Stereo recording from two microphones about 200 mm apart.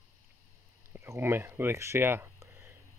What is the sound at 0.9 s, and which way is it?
Speech, 10° right (ahead or behind).